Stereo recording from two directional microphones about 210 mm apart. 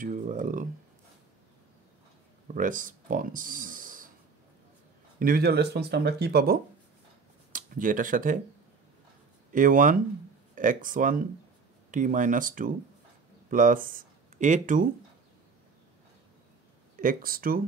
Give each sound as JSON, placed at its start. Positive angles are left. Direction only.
{"t": 0.0, "sound": "speech", "side_deg": -40}
{"t": 2.4, "sound": "speech", "side_deg": -40}
{"t": 5.2, "sound": "speech", "side_deg": -45}
{"t": 9.5, "sound": "speech", "side_deg": -40}
{"t": 17.0, "sound": "speech", "side_deg": -40}